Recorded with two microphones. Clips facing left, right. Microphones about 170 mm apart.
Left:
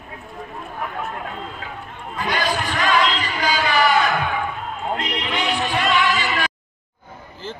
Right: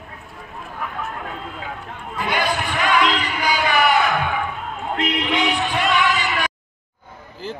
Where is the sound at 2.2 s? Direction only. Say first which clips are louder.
Even; 20° right (ahead or behind).